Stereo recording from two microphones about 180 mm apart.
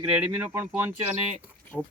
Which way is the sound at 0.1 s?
10° right (ahead or behind).